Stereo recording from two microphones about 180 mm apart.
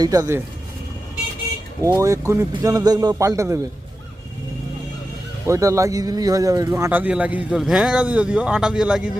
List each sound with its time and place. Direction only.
0.0 s a man's voice: 20° right (ahead or behind)
1.8 s a man's voice: 15° right (ahead or behind)
5.5 s speech: 15° right (ahead or behind)